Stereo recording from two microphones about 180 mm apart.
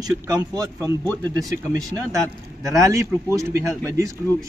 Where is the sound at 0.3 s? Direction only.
20° right (ahead or behind).